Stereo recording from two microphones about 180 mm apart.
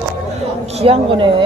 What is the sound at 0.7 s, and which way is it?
Speech, 30° right (ahead or behind).